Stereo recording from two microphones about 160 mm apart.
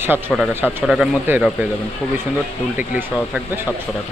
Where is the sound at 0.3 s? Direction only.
Centre (ahead or behind).